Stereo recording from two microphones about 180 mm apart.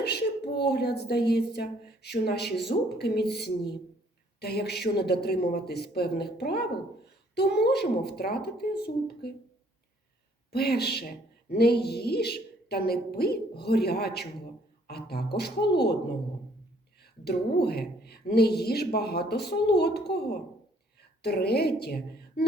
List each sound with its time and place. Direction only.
0.0 s a woman's voice: 65° left (ahead or behind)
10.5 s speech: 60° left (ahead or behind)
17.0 s speech: 65° left (ahead or behind)